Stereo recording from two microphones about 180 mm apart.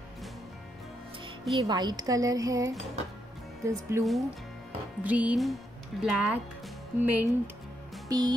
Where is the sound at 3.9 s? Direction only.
15° right (ahead or behind).